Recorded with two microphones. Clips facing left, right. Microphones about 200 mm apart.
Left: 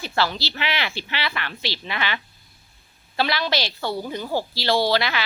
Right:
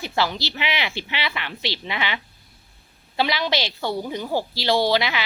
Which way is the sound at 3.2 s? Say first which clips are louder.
Right 1 dB; 15° right (ahead or behind).